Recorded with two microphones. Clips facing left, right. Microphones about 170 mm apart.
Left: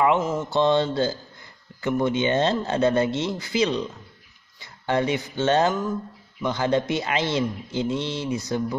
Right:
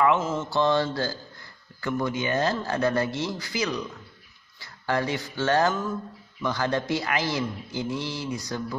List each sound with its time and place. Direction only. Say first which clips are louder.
0.0 s a man's voice: left 2 dB; 15° left (ahead or behind)